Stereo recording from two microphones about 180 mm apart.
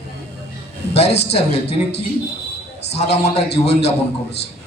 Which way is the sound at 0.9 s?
35° left (ahead or behind).